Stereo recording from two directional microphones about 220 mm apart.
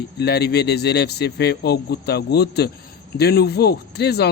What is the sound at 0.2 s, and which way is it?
Speech, 45° left (ahead or behind).